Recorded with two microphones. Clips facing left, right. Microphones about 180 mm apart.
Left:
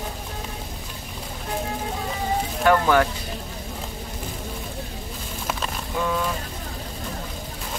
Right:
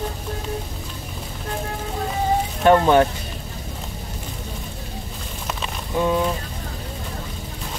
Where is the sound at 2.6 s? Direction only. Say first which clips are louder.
Right 4 dB; 25° right (ahead or behind).